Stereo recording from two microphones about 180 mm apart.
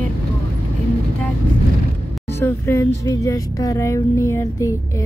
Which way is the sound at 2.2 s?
15° left (ahead or behind).